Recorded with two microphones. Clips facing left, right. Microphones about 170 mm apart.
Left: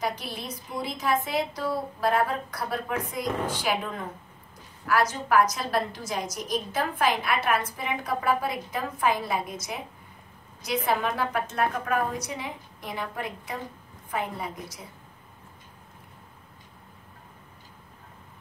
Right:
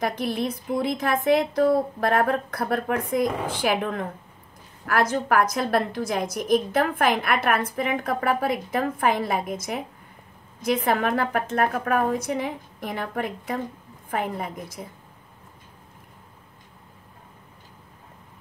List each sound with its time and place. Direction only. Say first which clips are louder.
0.0 s a woman's voice: right 7 dB; 50° right (ahead or behind)
10.9 s a woman's voice: right 2 dB; 55° right (ahead or behind)